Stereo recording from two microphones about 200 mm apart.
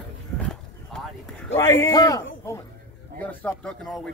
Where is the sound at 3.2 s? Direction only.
10° left (ahead or behind).